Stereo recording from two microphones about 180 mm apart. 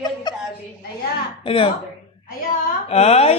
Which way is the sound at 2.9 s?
35° left (ahead or behind).